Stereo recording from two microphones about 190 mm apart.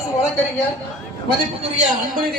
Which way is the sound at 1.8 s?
50° right (ahead or behind).